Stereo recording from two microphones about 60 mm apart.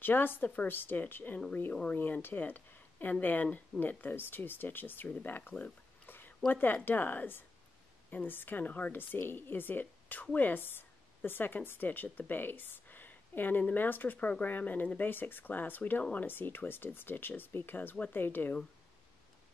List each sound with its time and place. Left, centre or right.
0.0 s speech: left
6.0 s a sound: left
6.5 s speech: left
16.3 s speech: left